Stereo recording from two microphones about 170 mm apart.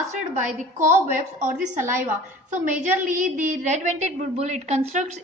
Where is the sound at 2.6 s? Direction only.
50° right (ahead or behind).